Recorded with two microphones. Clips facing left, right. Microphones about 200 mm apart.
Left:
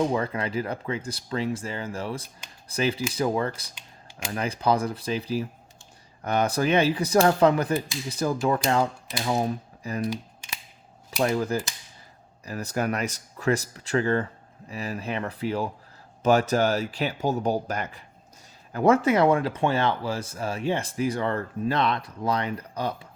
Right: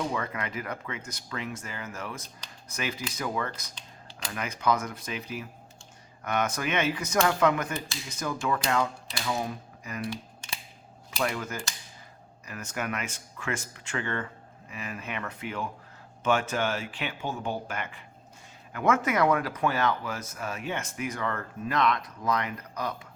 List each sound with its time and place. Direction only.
0.0 s speech: 30° left (ahead or behind)
11.2 s speech: 30° left (ahead or behind)